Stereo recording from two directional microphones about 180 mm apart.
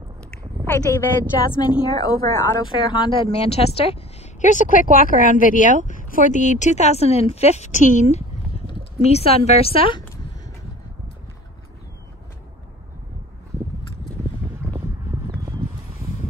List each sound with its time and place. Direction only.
0.7 s speech: 10° left (ahead or behind)
1.6 s a woman's voice: 20° left (ahead or behind)
14.6 s a sound: 10° right (ahead or behind)